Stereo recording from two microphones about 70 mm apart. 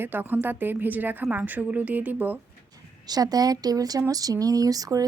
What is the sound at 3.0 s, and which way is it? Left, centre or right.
Speech, right.